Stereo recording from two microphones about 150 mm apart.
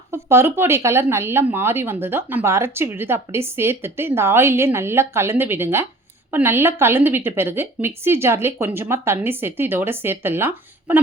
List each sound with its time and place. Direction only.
0.1 s speech: 20° right (ahead or behind)